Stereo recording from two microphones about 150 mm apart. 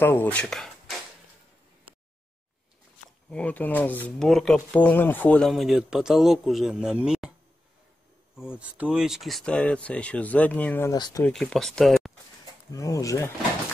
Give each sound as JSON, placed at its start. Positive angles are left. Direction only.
{"t": 0.0, "sound": "speech", "side_deg": 15}
{"t": 3.3, "sound": "speech", "side_deg": 10}
{"t": 8.4, "sound": "speech", "side_deg": -5}
{"t": 10.9, "sound": "speech", "side_deg": 25}
{"t": 11.2, "sound": "speech", "side_deg": 0}
{"t": 12.7, "sound": "speech", "side_deg": 20}